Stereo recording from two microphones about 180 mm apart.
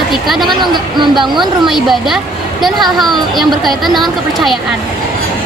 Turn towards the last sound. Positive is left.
turn(degrees=0)  # may be behind; listen again after turning